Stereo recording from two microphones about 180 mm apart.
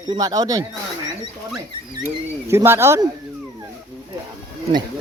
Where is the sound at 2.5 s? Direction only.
15° right (ahead or behind).